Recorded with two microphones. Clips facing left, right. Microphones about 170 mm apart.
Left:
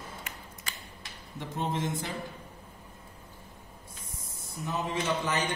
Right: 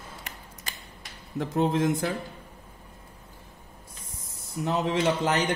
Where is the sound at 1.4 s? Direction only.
75° right (ahead or behind).